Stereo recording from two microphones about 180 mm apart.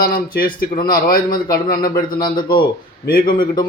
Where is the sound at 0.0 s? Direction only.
50° left (ahead or behind).